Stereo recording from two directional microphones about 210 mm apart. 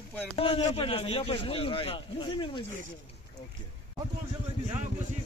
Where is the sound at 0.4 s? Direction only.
30° left (ahead or behind).